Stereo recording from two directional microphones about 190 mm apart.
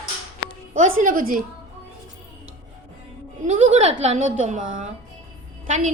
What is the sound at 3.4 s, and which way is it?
A woman's voice, 35° right (ahead or behind).